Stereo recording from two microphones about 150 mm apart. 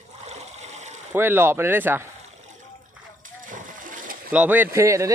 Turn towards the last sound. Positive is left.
turn(degrees=-20)  # may be behind; listen again after turning